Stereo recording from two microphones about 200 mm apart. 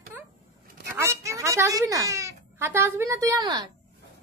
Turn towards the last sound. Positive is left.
turn(degrees=-20)  # may be behind; listen again after turning